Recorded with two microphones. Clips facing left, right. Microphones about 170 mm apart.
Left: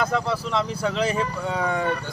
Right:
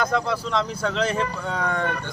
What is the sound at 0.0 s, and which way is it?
Speech, 5° left (ahead or behind).